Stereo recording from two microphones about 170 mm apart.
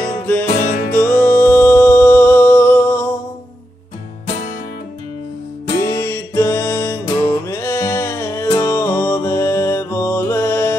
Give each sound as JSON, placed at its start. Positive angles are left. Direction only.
{"t": 0.5, "sound": "music", "side_deg": 55}
{"t": 0.9, "sound": "music", "side_deg": 15}
{"t": 5.7, "sound": "music", "side_deg": 15}